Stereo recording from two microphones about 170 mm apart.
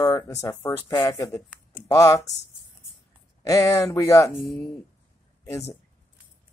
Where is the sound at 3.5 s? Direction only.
20° left (ahead or behind).